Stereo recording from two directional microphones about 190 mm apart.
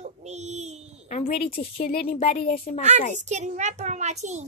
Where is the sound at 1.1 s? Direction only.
30° left (ahead or behind).